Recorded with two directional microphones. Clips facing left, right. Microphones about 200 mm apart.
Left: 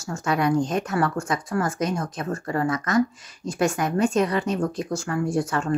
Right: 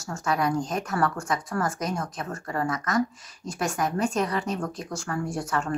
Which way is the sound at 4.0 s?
25° left (ahead or behind).